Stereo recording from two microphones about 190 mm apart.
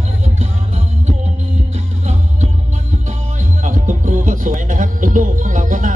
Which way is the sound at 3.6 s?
40° right (ahead or behind).